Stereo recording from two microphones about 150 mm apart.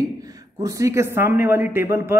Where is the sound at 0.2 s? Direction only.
25° right (ahead or behind).